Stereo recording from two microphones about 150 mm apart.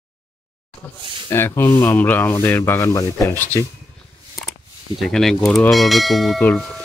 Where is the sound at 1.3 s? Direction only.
15° left (ahead or behind).